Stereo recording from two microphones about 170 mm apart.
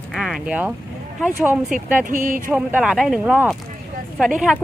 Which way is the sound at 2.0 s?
50° right (ahead or behind).